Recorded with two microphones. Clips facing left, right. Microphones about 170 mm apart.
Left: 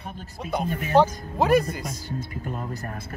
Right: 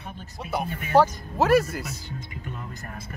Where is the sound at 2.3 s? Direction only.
45° left (ahead or behind).